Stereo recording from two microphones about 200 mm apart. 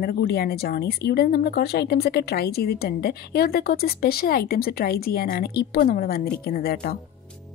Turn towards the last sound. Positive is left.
turn(degrees=50)  # may be behind; listen again after turning